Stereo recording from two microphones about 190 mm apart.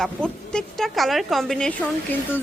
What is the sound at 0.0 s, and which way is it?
A woman's voice, 5° left (ahead or behind).